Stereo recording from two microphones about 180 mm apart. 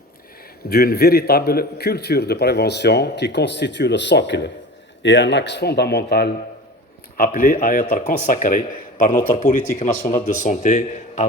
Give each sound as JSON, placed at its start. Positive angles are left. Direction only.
{"t": 0.7, "sound": "a man's voice", "side_deg": 60}
{"t": 7.2, "sound": "speech", "side_deg": 50}